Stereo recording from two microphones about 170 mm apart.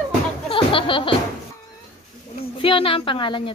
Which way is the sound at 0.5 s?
30° left (ahead or behind).